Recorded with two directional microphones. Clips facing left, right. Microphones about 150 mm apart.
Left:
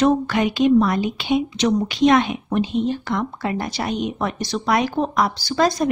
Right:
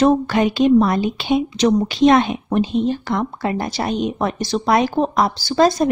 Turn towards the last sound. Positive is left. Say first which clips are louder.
# right 4 dB
turn(degrees=-30)  # may be behind; listen again after turning